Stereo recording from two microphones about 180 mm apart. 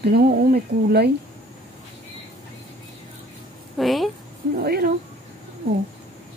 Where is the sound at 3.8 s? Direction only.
Centre (ahead or behind).